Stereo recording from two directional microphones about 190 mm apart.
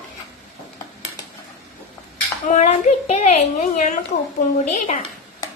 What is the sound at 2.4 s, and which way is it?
A woman's voice, 40° left (ahead or behind).